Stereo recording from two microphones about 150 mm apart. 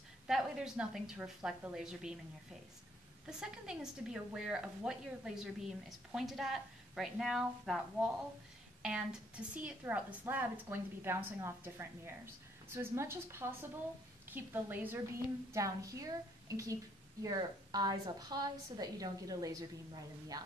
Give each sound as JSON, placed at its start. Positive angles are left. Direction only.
{"t": 0.3, "sound": "a woman's voice", "side_deg": -5}
{"t": 3.3, "sound": "a woman's voice", "side_deg": -5}